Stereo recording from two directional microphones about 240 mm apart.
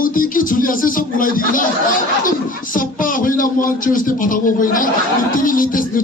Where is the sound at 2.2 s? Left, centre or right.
Left.